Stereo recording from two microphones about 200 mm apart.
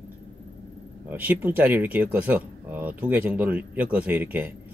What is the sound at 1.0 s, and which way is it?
Speech, 10° right (ahead or behind).